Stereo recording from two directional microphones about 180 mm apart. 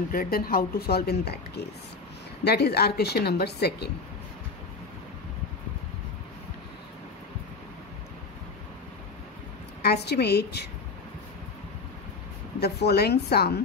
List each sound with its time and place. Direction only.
0.1 s a woman's voice: 55° left (ahead or behind)
2.4 s a woman's voice: 65° left (ahead or behind)
9.8 s a woman's voice: 65° left (ahead or behind)
12.5 s a woman's voice: 65° left (ahead or behind)